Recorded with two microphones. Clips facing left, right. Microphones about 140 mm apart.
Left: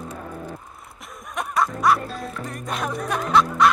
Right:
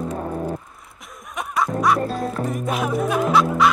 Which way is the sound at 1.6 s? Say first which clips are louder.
Right 1 dB; centre (ahead or behind).